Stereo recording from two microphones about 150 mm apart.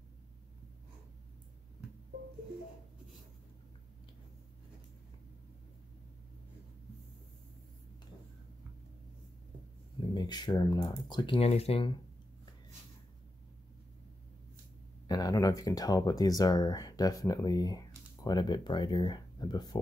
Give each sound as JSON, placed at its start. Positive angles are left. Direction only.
{"t": 10.1, "sound": "speech", "side_deg": 30}
{"t": 15.0, "sound": "speech", "side_deg": 25}